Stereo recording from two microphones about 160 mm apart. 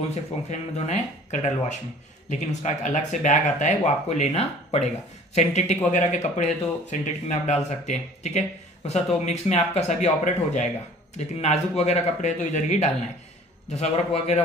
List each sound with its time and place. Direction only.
0.1 s a man's voice: 45° left (ahead or behind)